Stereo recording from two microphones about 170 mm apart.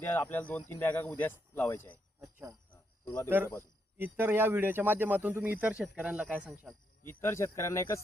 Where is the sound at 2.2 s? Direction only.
20° right (ahead or behind).